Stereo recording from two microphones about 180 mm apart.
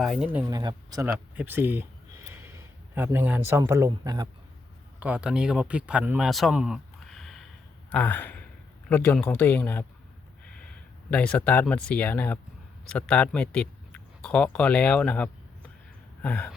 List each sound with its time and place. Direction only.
0.0 s speech: centre (ahead or behind)
0.4 s speech: 20° right (ahead or behind)
1.4 s a sound: 10° right (ahead or behind)
3.7 s speech: 15° right (ahead or behind)
4.9 s speech: 5° right (ahead or behind); by 9.8 s 10° left (ahead or behind)
10.4 s a sound: 5° left (ahead or behind)
11.1 s speech: 5° left (ahead or behind)